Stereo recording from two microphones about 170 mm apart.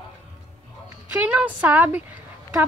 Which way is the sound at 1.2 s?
10° right (ahead or behind).